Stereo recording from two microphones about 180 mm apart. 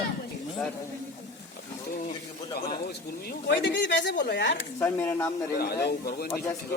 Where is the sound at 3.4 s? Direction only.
85° left.